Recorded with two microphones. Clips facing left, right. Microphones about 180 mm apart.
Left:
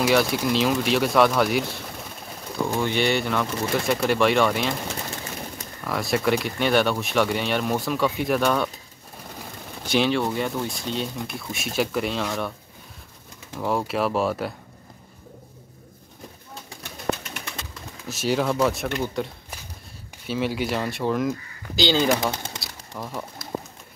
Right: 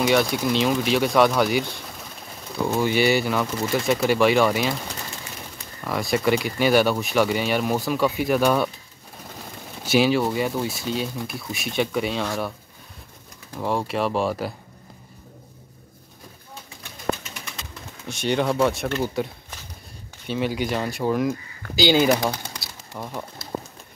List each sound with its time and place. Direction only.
0.0 s speech: centre (ahead or behind)
5.9 s speech: centre (ahead or behind)
9.8 s speech: 5° right (ahead or behind)
13.6 s speech: centre (ahead or behind)
18.0 s speech: 5° left (ahead or behind)
22.2 s speech: 25° left (ahead or behind)
22.6 s bird: centre (ahead or behind)